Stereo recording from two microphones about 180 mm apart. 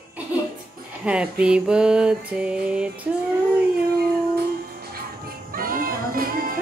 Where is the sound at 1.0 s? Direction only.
5° right (ahead or behind).